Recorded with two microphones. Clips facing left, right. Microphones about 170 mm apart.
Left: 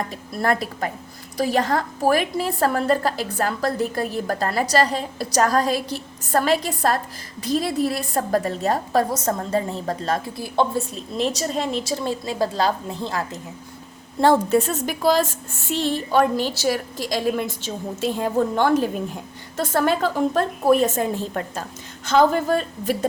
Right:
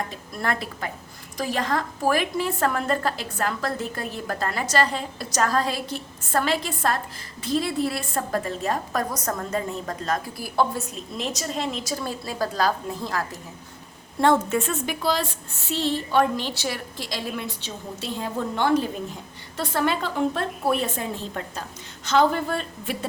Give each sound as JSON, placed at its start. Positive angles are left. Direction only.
{"t": 0.4, "sound": "a woman's voice", "side_deg": 40}
{"t": 11.2, "sound": "a woman's voice", "side_deg": 35}